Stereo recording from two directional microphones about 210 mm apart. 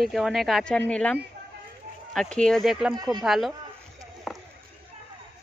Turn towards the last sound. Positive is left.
turn(degrees=0)  # may be behind; listen again after turning